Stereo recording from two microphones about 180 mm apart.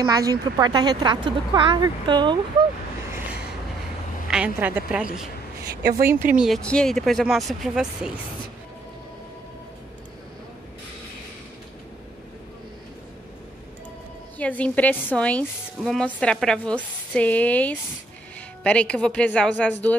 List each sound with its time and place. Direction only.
0.0 s speech: 20° right (ahead or behind)
4.3 s a woman's voice: 10° right (ahead or behind)
5.8 s speech: 60° right (ahead or behind)
6.3 s speech: 5° right (ahead or behind)
14.4 s a woman's voice: 10° left (ahead or behind)